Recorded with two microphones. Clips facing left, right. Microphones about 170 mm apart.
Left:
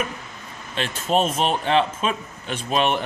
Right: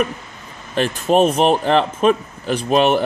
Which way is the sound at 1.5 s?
40° right (ahead or behind).